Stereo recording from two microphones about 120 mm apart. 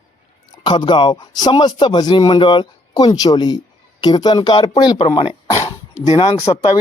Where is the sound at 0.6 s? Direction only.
40° left (ahead or behind).